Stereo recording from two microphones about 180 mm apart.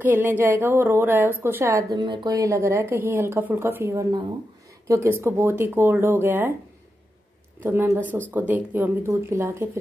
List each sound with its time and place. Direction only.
0.0 s a woman's voice: 10° right (ahead or behind)
7.6 s a woman's voice: 10° right (ahead or behind)